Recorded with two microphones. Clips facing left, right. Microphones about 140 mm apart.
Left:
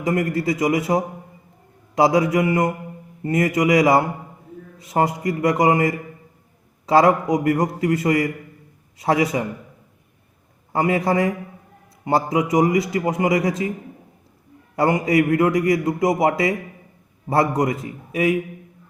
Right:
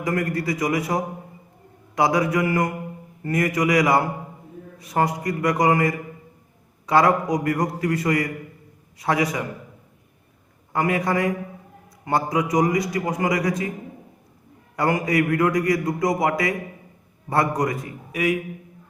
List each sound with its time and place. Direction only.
0.0 s a man's voice: 25° left (ahead or behind)
10.7 s a man's voice: 25° left (ahead or behind)
14.8 s a man's voice: 25° left (ahead or behind)